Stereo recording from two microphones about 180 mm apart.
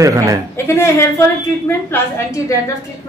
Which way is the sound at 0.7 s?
15° left (ahead or behind).